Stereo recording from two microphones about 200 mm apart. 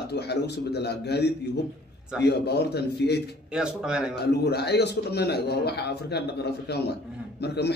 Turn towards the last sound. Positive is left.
turn(degrees=55)  # may be behind; listen again after turning